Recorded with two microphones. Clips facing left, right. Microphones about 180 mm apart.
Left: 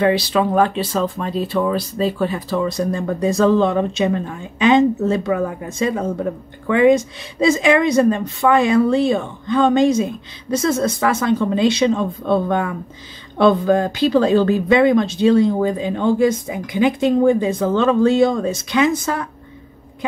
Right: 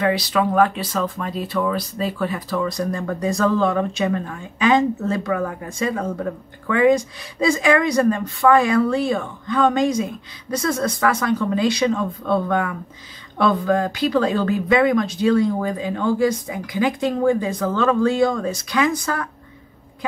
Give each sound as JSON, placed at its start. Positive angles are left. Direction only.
{"t": 0.0, "sound": "speech", "side_deg": 30}